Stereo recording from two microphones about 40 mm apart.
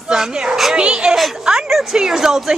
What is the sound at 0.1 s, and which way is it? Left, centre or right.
Children playing, centre.